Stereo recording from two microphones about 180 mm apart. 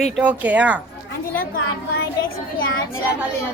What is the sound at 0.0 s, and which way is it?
Speech, 5° right (ahead or behind).